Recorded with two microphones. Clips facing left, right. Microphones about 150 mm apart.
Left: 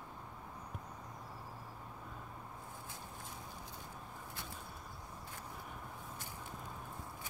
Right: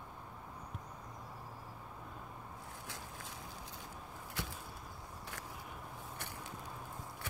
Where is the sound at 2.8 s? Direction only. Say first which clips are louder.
Right 1 dB; 90° right.